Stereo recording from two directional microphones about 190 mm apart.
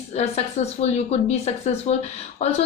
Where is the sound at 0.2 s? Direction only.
35° left (ahead or behind).